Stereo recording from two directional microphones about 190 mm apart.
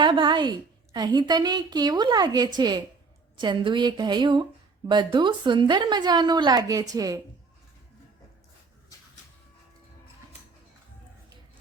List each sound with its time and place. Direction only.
0.0 s a woman's voice: 25° right (ahead or behind)